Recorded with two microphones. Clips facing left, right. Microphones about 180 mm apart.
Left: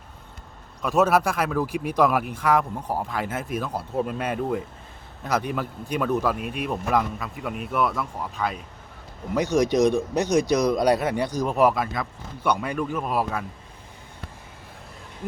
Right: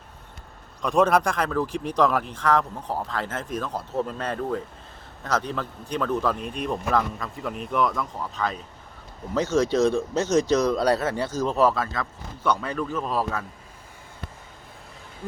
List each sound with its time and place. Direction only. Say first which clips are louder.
0.8 s speech: even; 5° left (ahead or behind)